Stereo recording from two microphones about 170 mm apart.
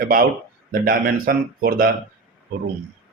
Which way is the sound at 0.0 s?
55° right (ahead or behind).